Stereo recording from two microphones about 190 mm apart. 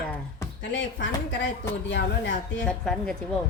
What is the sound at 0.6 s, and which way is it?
A woman's voice, 70° left (ahead or behind).